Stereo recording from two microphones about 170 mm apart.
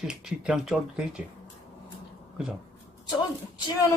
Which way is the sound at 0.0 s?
5° right (ahead or behind).